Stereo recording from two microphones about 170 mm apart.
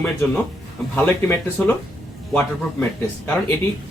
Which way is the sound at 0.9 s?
10° left (ahead or behind).